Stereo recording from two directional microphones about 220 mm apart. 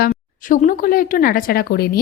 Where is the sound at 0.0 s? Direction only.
35° left (ahead or behind).